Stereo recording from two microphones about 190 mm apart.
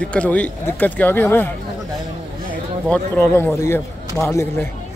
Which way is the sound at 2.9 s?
10° left (ahead or behind).